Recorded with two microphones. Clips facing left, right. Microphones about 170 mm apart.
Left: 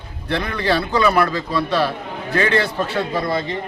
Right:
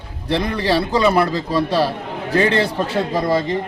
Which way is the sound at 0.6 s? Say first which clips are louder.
Even; 30° right (ahead or behind).